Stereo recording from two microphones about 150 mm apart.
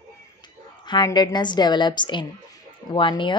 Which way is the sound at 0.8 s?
30° left (ahead or behind).